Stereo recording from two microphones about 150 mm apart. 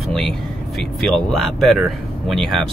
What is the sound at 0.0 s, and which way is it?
Speech, 5° left (ahead or behind).